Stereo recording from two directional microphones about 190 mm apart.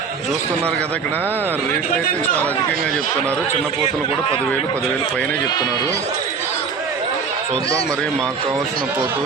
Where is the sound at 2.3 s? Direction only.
10° left (ahead or behind).